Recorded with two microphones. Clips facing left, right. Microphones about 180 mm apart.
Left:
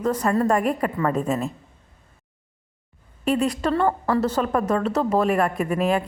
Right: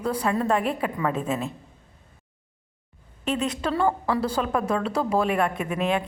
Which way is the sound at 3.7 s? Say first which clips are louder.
Left 1 dB; 5° right (ahead or behind).